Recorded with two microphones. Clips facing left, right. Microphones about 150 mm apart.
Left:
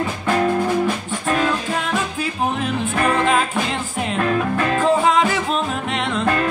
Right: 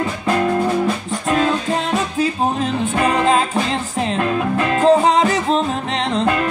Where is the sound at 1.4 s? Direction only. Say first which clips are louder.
Right 3 dB; 30° right (ahead or behind).